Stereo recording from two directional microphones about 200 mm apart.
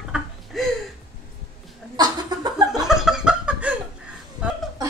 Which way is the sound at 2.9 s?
5° right (ahead or behind).